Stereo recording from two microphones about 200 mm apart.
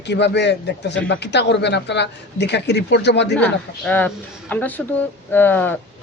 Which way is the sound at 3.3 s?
5° left (ahead or behind).